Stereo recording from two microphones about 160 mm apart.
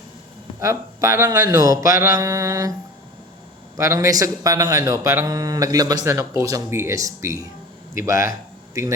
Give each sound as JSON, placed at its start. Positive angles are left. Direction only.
{"t": 0.6, "sound": "a man's voice", "side_deg": -20}
{"t": 3.8, "sound": "a man's voice", "side_deg": -20}